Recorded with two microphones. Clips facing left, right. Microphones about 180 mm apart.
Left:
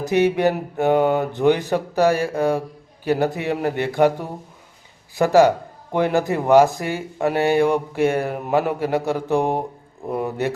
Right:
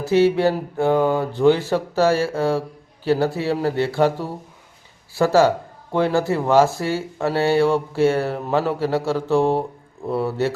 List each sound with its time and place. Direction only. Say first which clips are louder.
0.0 s speech: right 1 dB; 15° left (ahead or behind)